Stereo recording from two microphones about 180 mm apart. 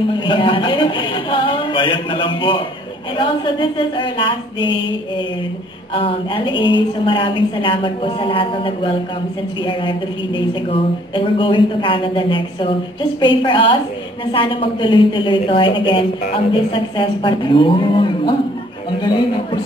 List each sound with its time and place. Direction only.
0.1 s a woman's voice: 25° left (ahead or behind)
5.9 s a woman's voice: 30° left (ahead or behind)